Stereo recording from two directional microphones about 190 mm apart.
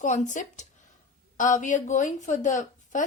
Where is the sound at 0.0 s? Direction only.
40° left (ahead or behind).